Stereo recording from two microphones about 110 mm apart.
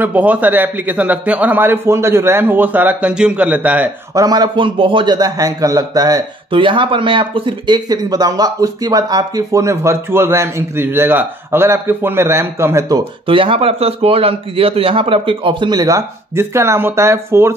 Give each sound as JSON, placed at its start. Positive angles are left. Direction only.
{"t": 0.0, "sound": "a man's voice", "side_deg": -15}
{"t": 4.1, "sound": "speech", "side_deg": -35}
{"t": 6.5, "sound": "speech", "side_deg": -50}
{"t": 13.3, "sound": "speech", "side_deg": -55}
{"t": 16.3, "sound": "speech", "side_deg": -25}